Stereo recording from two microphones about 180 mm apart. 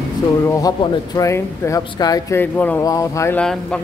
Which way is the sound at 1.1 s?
15° left (ahead or behind).